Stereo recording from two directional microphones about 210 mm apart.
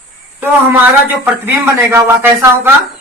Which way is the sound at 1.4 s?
10° right (ahead or behind).